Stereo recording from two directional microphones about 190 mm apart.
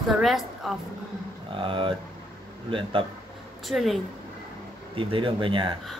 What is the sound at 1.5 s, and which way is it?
Speech, 25° right (ahead or behind).